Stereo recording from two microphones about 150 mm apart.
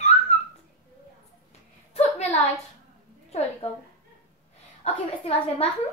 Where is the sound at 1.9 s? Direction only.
45° left (ahead or behind).